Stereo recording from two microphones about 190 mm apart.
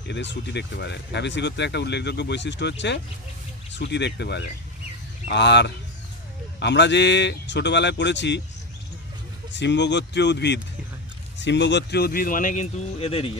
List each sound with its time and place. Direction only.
0.1 s speech: 65° left (ahead or behind)
9.5 s speech: 70° left (ahead or behind); by 13.3 s 30° left (ahead or behind)